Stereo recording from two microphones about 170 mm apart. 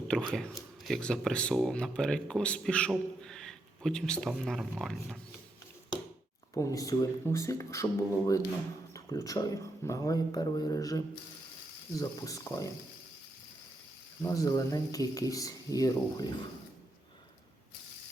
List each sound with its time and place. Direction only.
0.1 s speech: 5° left (ahead or behind)
6.5 s speech: 20° left (ahead or behind)
14.2 s speech: 20° left (ahead or behind)